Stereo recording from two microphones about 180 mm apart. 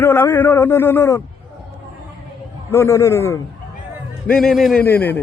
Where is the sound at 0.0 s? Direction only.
10° left (ahead or behind).